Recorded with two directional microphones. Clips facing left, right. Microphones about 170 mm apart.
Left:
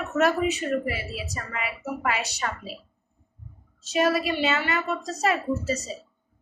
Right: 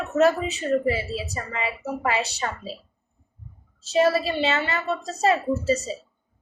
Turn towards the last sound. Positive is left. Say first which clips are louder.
# right 4 dB
turn(degrees=-30)  # may be behind; listen again after turning